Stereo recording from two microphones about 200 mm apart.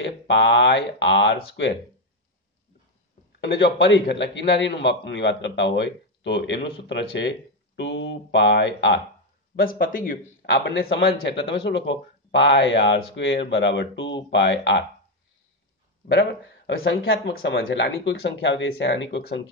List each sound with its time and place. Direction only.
0.0 s a man's voice: 65° left (ahead or behind)
3.3 s a man's voice: 60° left (ahead or behind)
9.6 s a man's voice: 45° left (ahead or behind)
10.4 s a man's voice: 60° left (ahead or behind)
16.1 s a man's voice: 55° left (ahead or behind); by 17.2 s 75° left (ahead or behind)
17.3 s a man's voice: 50° left (ahead or behind)
17.6 s a man's voice: 65° left (ahead or behind)